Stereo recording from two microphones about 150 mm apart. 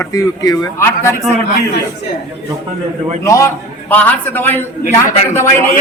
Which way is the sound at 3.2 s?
20° left (ahead or behind).